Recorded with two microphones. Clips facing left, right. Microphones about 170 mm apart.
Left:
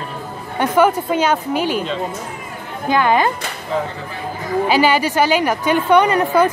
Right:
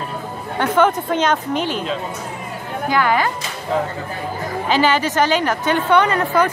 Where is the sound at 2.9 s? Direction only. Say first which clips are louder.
Left 3 dB; 20° left (ahead or behind).